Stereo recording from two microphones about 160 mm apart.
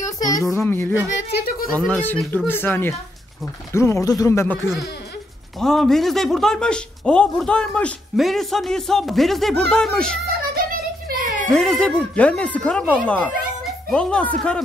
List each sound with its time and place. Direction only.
0.0 s speech: 20° left (ahead or behind)
1.3 s speech: 70° left (ahead or behind)
1.7 s speech: 5° left (ahead or behind)
5.6 s a man's voice: 5° left (ahead or behind)
10.5 s a sound: 65° right (ahead or behind)
11.5 s speech: 5° left (ahead or behind)